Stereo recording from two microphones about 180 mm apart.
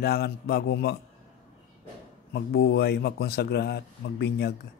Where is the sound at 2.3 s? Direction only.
65° left (ahead or behind).